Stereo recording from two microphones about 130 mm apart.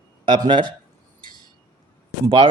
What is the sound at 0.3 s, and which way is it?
Speech, 35° right (ahead or behind).